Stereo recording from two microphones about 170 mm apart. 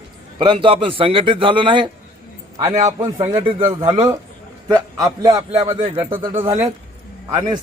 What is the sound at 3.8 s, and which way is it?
Speech, 20° right (ahead or behind).